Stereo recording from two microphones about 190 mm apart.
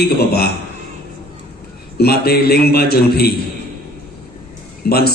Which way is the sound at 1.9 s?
55° left (ahead or behind).